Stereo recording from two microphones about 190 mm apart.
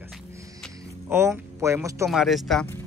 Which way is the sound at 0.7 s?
15° right (ahead or behind).